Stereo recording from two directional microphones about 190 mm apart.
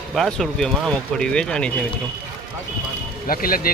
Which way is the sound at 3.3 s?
50° left (ahead or behind).